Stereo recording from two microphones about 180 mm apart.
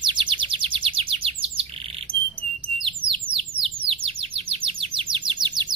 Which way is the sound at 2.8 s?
30° right (ahead or behind).